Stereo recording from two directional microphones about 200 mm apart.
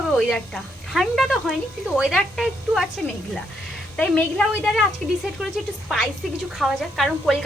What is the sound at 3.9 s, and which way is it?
Speech, 5° left (ahead or behind).